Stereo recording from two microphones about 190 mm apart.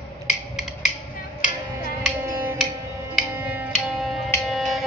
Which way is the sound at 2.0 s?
5° right (ahead or behind).